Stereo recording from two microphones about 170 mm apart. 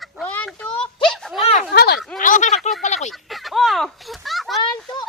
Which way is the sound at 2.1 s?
50° left (ahead or behind).